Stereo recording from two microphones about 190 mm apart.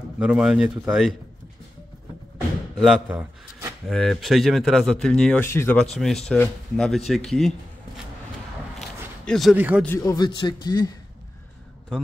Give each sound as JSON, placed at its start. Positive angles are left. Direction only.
{"t": 0.2, "sound": "speech", "side_deg": -5}
{"t": 2.8, "sound": "speech", "side_deg": -5}
{"t": 9.2, "sound": "speech", "side_deg": 0}
{"t": 9.8, "sound": "a man's voice", "side_deg": 20}